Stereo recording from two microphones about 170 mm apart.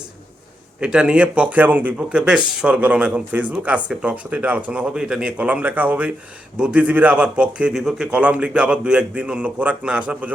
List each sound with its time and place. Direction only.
0.8 s speech: 5° right (ahead or behind)